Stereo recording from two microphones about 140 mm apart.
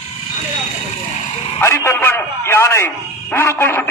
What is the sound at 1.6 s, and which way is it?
A man's voice, 20° left (ahead or behind).